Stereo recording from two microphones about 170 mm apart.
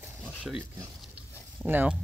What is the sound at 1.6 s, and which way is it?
Speech, 10° right (ahead or behind).